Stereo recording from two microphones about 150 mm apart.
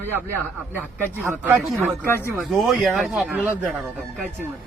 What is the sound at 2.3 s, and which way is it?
Speech, centre (ahead or behind).